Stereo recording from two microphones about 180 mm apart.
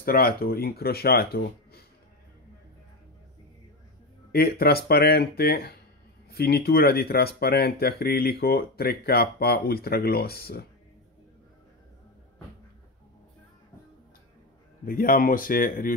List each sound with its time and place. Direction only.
0.0 s speech: 55° left (ahead or behind)
4.3 s speech: 55° left (ahead or behind)
14.9 s speech: 50° left (ahead or behind)